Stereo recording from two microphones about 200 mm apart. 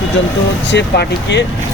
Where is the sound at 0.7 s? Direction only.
60° left (ahead or behind).